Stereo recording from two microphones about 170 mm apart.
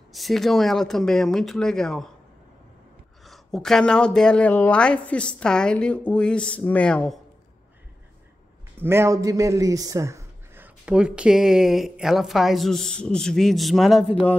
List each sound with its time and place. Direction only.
0.1 s speech: centre (ahead or behind)
3.3 s speech: centre (ahead or behind)
8.7 s speech: 15° right (ahead or behind); by 14.3 s centre (ahead or behind)